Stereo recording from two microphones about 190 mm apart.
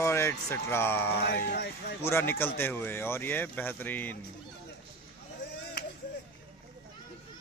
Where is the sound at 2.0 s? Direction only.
10° left (ahead or behind).